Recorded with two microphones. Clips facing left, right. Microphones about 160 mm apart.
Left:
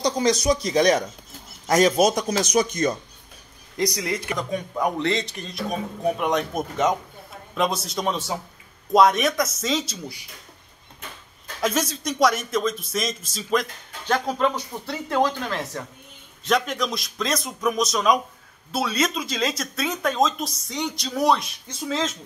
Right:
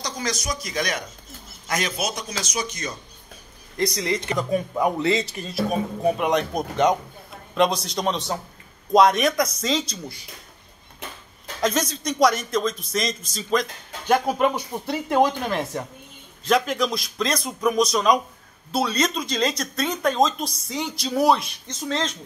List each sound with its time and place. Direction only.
0.0 s a man's voice: 30° left (ahead or behind); by 3.0 s 50° left (ahead or behind)
3.7 s speech: 15° left (ahead or behind)
4.4 s speech: 5° right (ahead or behind)
11.6 s speech: 5° left (ahead or behind)
14.0 s speech: 15° right (ahead or behind)
16.4 s speech: centre (ahead or behind)